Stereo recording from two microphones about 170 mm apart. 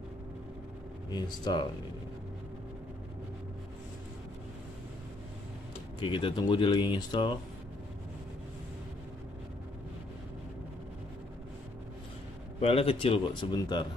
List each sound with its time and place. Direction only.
1.1 s speech: 25° left (ahead or behind)
5.9 s speech: 30° left (ahead or behind)
12.5 s speech: 35° left (ahead or behind)